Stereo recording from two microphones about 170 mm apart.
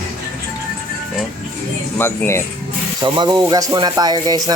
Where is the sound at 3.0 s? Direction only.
25° right (ahead or behind).